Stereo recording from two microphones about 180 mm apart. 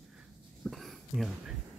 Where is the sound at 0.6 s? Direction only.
Centre (ahead or behind).